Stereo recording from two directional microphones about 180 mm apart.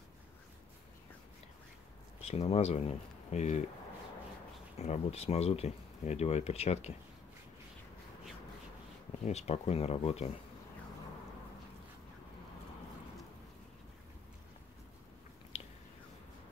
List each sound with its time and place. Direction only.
2.2 s speech: 35° left (ahead or behind)
4.7 s speech: 40° left (ahead or behind)
9.2 s speech: 35° left (ahead or behind)
15.5 s a sound: 35° left (ahead or behind)